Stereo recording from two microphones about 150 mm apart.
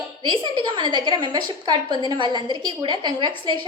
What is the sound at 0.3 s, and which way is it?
A woman's voice, 30° right (ahead or behind).